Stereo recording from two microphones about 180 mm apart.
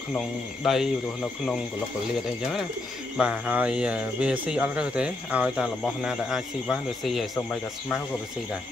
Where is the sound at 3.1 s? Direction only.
5° right (ahead or behind).